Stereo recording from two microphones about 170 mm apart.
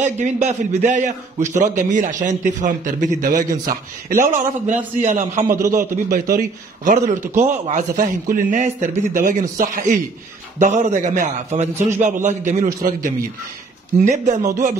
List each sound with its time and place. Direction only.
0.0 s a man's voice: 45° right (ahead or behind)
5.5 s a man's voice: 20° right (ahead or behind)
5.8 s a man's voice: 55° right (ahead or behind)
13.9 s a man's voice: 45° right (ahead or behind)